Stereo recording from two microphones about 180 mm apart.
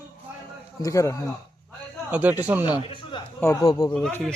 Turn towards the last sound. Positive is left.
turn(degrees=5)  # may be behind; listen again after turning